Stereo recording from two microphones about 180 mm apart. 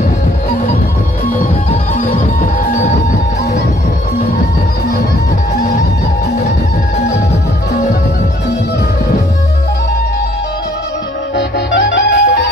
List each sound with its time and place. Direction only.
11.3 s music: 70° left (ahead or behind)